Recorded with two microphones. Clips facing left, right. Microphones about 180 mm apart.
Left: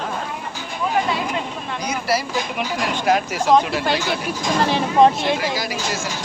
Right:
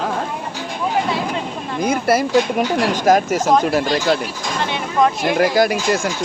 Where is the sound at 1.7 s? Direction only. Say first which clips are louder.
Right 6 dB; 50° right (ahead or behind).